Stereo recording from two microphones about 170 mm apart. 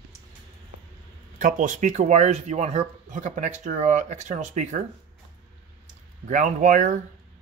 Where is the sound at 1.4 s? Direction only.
50° right (ahead or behind).